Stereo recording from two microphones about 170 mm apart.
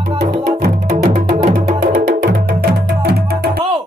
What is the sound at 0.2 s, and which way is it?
Music, 70° right (ahead or behind).